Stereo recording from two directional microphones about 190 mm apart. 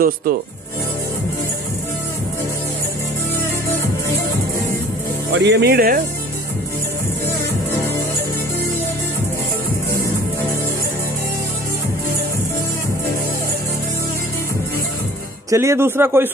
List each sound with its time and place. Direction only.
0.0 s speech: 50° right (ahead or behind)
5.4 s speech: 65° right (ahead or behind)
15.5 s speech: 15° right (ahead or behind)